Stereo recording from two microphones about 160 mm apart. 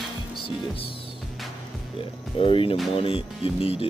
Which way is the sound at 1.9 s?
35° left (ahead or behind).